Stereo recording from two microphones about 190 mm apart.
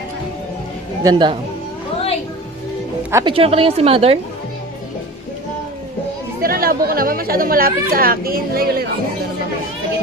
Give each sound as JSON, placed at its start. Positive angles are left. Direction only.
{"t": 1.0, "sound": "speech", "side_deg": -25}
{"t": 3.1, "sound": "speech", "side_deg": -15}
{"t": 3.3, "sound": "a woman's voice", "side_deg": -30}
{"t": 6.4, "sound": "speech", "side_deg": -50}